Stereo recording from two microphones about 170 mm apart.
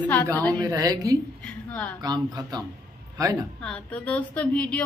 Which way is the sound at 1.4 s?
10° left (ahead or behind).